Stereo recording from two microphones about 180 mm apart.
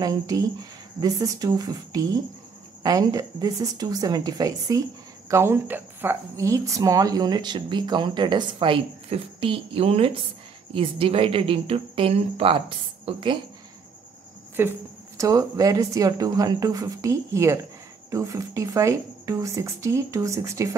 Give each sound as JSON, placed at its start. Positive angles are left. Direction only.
{"t": 0.0, "sound": "a woman's voice", "side_deg": -20}
{"t": 14.6, "sound": "speech", "side_deg": -15}